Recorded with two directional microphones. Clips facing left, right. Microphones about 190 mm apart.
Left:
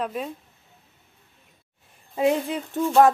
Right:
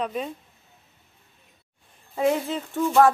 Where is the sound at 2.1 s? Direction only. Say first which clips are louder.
Left 1 dB; 15° left (ahead or behind).